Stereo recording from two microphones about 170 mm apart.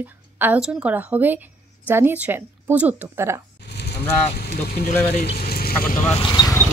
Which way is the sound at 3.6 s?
75° left (ahead or behind).